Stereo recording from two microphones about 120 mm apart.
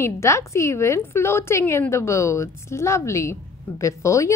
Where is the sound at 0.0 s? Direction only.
20° left (ahead or behind).